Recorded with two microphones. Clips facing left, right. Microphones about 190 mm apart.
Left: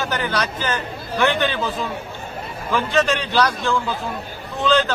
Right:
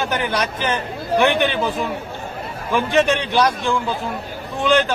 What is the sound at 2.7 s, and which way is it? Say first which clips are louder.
Speech: right 2 dB; 15° right (ahead or behind).